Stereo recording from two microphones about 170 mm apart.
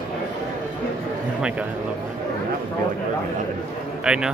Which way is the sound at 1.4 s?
5° right (ahead or behind).